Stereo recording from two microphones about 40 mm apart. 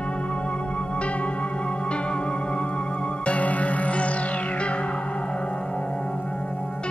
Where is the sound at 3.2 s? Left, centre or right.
Left.